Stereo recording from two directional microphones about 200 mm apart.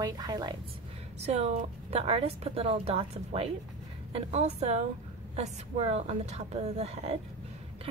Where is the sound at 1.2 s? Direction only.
35° right (ahead or behind).